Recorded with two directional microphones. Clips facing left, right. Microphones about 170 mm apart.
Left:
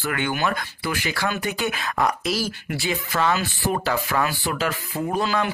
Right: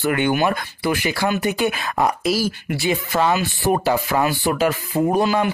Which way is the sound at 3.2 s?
15° right (ahead or behind).